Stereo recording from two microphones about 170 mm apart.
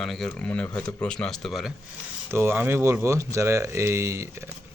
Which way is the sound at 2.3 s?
15° right (ahead or behind).